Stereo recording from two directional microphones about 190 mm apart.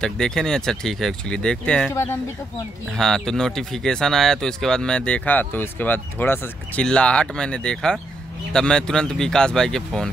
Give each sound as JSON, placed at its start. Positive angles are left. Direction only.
{"t": 0.0, "sound": "speech", "side_deg": 5}
{"t": 2.9, "sound": "speech", "side_deg": 0}